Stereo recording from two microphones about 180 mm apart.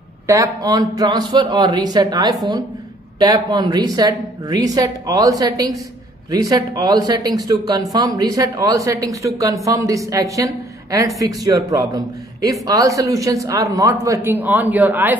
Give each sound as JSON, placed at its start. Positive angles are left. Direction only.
{"t": 0.3, "sound": "a woman's voice", "side_deg": -20}